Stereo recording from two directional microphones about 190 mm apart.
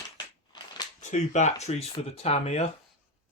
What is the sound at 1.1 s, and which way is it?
Speech, 40° left (ahead or behind).